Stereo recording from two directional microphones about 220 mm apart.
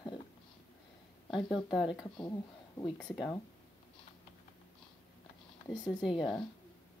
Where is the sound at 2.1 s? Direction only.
20° left (ahead or behind).